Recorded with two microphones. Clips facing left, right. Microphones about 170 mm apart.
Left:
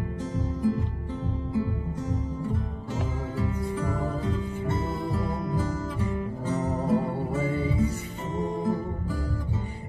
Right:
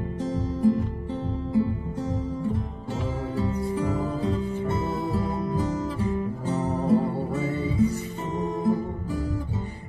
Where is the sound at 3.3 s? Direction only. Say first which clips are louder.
Right 3 dB; 35° right (ahead or behind).